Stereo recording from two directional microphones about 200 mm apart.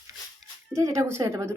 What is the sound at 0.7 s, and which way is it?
Speech, 15° right (ahead or behind).